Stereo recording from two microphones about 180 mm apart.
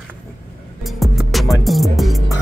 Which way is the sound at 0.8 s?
Centre (ahead or behind).